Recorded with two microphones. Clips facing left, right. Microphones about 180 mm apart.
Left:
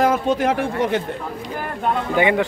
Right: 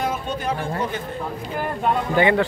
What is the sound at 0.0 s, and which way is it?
Speech, 90° left.